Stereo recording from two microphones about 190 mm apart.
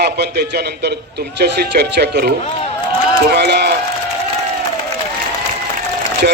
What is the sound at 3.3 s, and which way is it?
Speech, 60° right (ahead or behind).